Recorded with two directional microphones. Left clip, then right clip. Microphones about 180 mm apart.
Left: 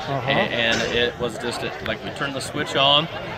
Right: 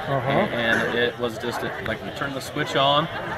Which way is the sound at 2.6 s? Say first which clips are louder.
Left 2 dB; 25° left (ahead or behind).